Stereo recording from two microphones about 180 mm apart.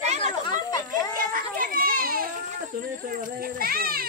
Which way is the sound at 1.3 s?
50° right (ahead or behind).